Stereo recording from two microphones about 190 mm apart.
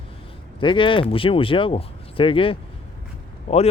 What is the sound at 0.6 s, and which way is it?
Speech, 25° left (ahead or behind).